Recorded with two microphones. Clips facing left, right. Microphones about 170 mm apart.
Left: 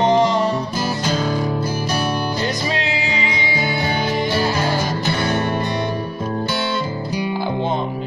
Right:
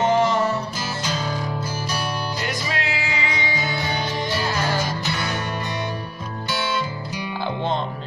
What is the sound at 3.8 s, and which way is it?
Music, 55° left (ahead or behind).